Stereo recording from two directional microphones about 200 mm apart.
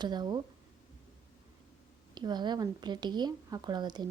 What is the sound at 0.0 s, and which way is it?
Speech, 20° right (ahead or behind).